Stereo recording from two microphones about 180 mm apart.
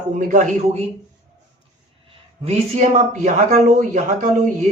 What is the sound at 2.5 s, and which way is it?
Speech, 40° right (ahead or behind).